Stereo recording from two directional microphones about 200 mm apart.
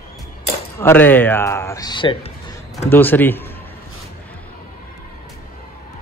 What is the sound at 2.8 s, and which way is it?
Speech, 10° left (ahead or behind).